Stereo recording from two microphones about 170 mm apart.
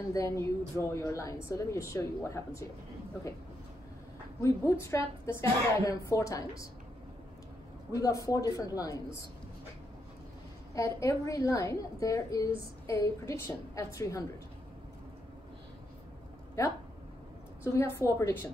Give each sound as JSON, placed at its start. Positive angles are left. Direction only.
{"t": 0.1, "sound": "a woman's voice", "side_deg": 15}
{"t": 4.4, "sound": "a woman's voice", "side_deg": 15}
{"t": 7.9, "sound": "a woman's voice", "side_deg": 20}
{"t": 10.7, "sound": "a woman's voice", "side_deg": 20}
{"t": 17.7, "sound": "a woman's voice", "side_deg": 15}